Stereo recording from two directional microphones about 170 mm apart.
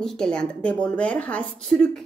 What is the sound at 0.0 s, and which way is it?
A woman's voice, 5° left (ahead or behind).